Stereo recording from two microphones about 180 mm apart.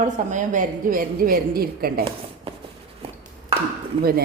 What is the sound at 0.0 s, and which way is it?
Speech, 45° right (ahead or behind).